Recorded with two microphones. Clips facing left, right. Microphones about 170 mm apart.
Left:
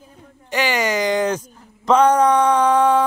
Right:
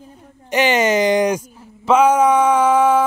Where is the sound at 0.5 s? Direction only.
20° right (ahead or behind).